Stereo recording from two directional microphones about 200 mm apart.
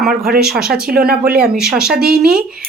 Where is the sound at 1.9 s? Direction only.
50° right (ahead or behind).